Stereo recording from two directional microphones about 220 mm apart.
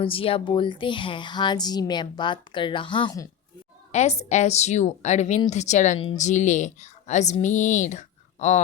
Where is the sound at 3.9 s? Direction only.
30° left (ahead or behind).